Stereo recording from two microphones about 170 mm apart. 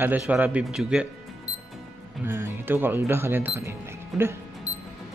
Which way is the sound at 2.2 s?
15° right (ahead or behind).